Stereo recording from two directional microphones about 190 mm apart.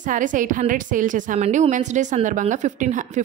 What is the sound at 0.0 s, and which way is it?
Speech, 45° right (ahead or behind).